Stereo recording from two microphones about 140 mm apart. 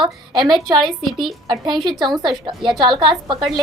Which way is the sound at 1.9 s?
Centre (ahead or behind).